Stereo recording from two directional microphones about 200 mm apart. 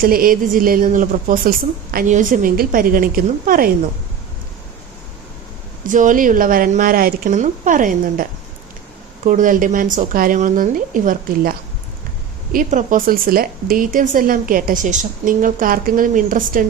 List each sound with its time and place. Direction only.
0.0 s speech: 45° right (ahead or behind)
5.9 s speech: 40° right (ahead or behind)